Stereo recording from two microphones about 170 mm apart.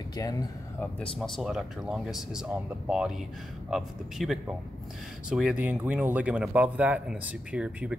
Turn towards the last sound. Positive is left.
turn(degrees=-5)  # may be behind; listen again after turning